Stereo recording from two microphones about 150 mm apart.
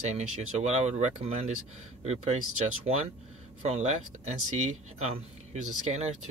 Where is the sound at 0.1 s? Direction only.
50° right (ahead or behind).